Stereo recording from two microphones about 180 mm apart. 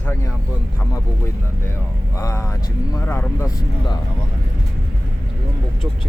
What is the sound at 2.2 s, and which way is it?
Speech, 15° left (ahead or behind).